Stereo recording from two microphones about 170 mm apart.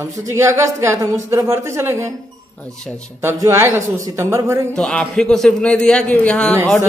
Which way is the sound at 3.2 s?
15° right (ahead or behind).